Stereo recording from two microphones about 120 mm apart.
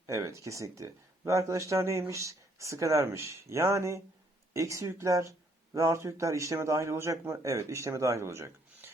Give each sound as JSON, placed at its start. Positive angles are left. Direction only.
{"t": 0.0, "sound": "speech", "side_deg": -25}